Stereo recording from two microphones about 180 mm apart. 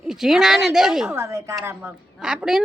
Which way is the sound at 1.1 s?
15° right (ahead or behind).